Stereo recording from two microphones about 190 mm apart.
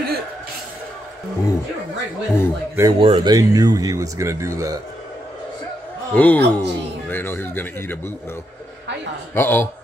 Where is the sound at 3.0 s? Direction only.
25° right (ahead or behind).